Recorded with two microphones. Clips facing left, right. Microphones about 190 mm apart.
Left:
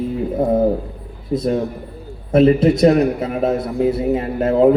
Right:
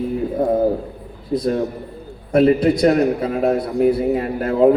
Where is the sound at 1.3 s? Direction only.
25° left (ahead or behind).